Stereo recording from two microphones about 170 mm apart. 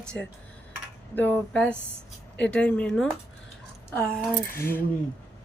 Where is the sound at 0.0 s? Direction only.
5° left (ahead or behind).